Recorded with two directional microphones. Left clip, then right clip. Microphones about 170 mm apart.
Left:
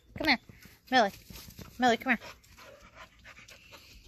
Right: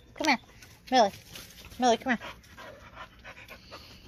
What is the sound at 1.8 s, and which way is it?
Speech, 20° left (ahead or behind).